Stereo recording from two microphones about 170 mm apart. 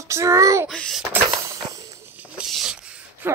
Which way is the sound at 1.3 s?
20° right (ahead or behind).